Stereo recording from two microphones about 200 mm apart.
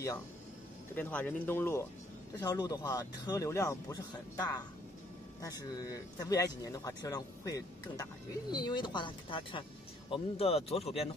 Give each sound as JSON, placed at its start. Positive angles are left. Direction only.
{"t": 0.9, "sound": "speech", "side_deg": 10}